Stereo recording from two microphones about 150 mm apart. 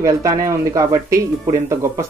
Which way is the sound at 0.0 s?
20° right (ahead or behind).